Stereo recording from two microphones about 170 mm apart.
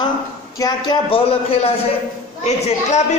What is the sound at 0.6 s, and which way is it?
Speech, 25° left (ahead or behind).